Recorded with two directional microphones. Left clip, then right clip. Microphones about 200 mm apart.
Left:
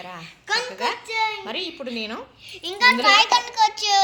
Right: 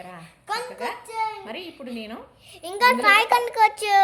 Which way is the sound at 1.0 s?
30° right (ahead or behind).